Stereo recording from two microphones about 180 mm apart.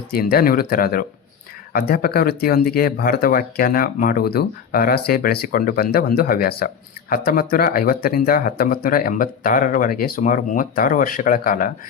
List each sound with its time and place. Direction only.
0.1 s speech: 55° left (ahead or behind)